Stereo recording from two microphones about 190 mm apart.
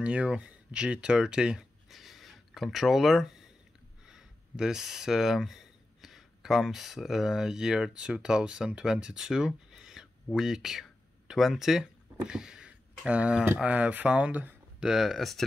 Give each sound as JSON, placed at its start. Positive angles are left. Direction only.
{"t": 0.0, "sound": "speech", "side_deg": -5}